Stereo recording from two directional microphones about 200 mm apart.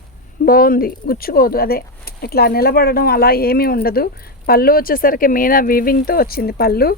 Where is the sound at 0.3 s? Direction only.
45° left (ahead or behind).